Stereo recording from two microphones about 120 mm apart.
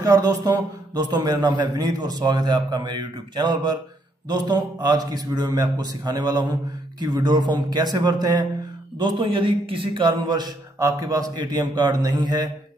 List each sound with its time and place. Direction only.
0.0 s a man's voice: 30° right (ahead or behind)